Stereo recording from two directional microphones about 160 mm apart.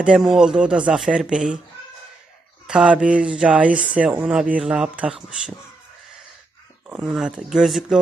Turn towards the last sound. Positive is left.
turn(degrees=0)  # may be behind; listen again after turning